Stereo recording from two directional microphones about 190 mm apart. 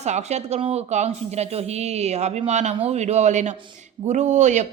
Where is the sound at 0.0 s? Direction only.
35° right (ahead or behind).